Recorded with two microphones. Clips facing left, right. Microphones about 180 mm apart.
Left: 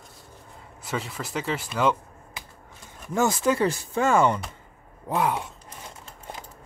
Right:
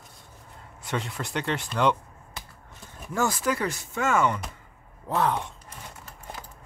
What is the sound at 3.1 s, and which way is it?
Speech, 20° left (ahead or behind).